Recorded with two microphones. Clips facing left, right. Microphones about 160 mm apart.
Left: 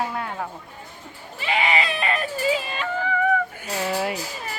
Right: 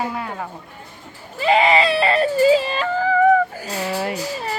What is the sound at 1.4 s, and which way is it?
Whimper, 35° right (ahead or behind).